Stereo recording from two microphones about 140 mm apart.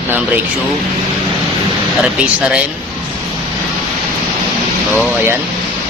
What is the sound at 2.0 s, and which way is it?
Speech, 5° right (ahead or behind).